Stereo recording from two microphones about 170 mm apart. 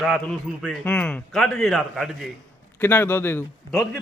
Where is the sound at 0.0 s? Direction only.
Centre (ahead or behind).